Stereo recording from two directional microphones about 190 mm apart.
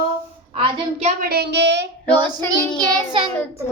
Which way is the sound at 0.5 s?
30° right (ahead or behind).